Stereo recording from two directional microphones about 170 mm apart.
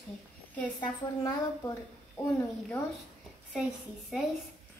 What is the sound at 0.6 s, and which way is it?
A woman's voice, 15° left (ahead or behind).